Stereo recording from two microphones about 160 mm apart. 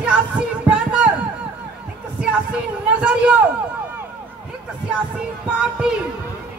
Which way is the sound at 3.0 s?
5° right (ahead or behind).